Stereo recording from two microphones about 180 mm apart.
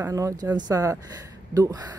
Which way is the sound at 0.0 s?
20° right (ahead or behind).